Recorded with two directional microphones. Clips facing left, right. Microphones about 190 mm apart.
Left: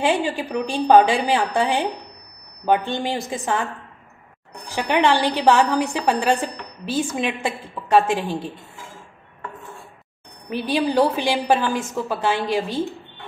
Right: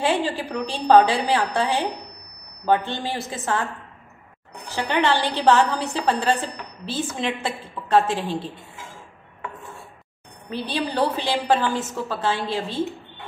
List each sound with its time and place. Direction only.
0.0 s a woman's voice: 15° left (ahead or behind)
4.6 s a woman's voice: 15° left (ahead or behind)
10.5 s a woman's voice: 15° left (ahead or behind)